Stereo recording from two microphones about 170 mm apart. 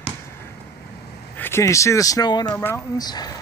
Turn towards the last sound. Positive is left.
turn(degrees=25)  # may be behind; listen again after turning